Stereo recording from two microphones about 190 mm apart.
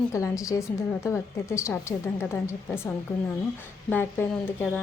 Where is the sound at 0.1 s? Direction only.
15° left (ahead or behind).